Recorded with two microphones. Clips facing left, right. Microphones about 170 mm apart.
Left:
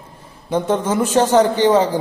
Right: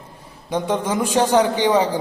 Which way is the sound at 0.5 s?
15° right (ahead or behind).